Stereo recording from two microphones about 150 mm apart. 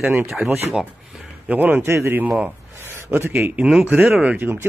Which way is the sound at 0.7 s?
Centre (ahead or behind).